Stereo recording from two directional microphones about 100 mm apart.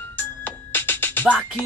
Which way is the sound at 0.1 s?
20° left (ahead or behind).